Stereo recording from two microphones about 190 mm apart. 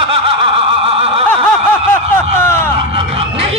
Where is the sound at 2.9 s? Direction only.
30° right (ahead or behind).